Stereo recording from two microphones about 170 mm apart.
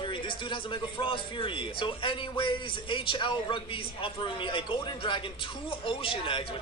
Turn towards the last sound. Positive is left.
turn(degrees=30)  # may be behind; listen again after turning